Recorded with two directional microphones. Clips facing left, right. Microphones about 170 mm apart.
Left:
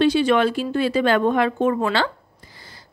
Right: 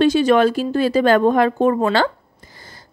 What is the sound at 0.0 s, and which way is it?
Speech, 45° right (ahead or behind).